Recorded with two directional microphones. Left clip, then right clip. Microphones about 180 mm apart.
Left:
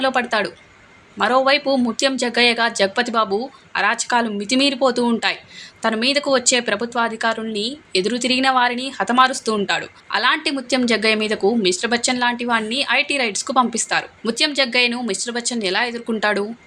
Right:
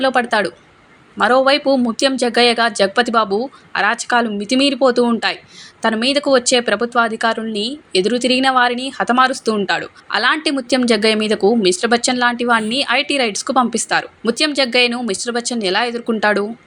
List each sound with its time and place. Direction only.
0.0 s a woman's voice: 15° right (ahead or behind)